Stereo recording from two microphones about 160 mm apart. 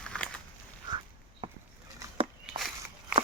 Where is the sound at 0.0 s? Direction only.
5° left (ahead or behind).